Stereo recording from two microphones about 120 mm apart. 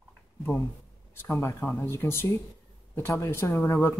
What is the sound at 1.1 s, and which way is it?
Speech, 20° left (ahead or behind).